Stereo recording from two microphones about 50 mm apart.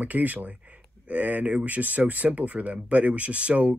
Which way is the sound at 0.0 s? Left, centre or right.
Right.